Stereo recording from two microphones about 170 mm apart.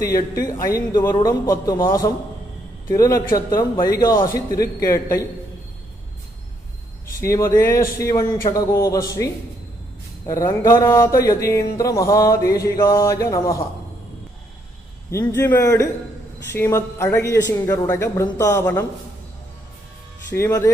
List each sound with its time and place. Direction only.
0.7 s speech: 20° left (ahead or behind)
4.5 s speech: 60° left (ahead or behind)
4.8 s speech: 20° left (ahead or behind)
7.1 s speech: 15° left (ahead or behind)
15.0 s speech: 15° left (ahead or behind)
20.3 s speech: 15° left (ahead or behind)